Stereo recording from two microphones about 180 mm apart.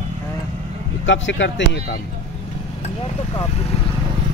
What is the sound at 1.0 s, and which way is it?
Speech, 90° left.